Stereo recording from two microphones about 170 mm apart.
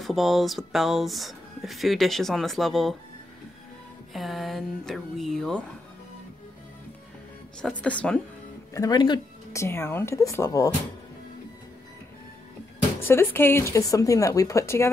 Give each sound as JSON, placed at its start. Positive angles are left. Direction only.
{"t": 0.0, "sound": "speech", "side_deg": 0}
{"t": 4.1, "sound": "speech", "side_deg": 0}
{"t": 7.8, "sound": "speech", "side_deg": 5}
{"t": 8.7, "sound": "speech", "side_deg": 25}
{"t": 13.0, "sound": "speech", "side_deg": 15}